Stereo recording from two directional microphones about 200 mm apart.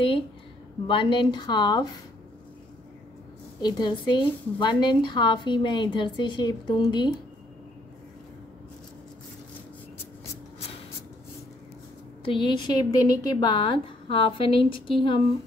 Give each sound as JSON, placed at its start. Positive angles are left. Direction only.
{"t": 0.8, "sound": "a woman's voice", "side_deg": 25}
{"t": 3.6, "sound": "a woman's voice", "side_deg": 20}
{"t": 12.3, "sound": "a woman's voice", "side_deg": 25}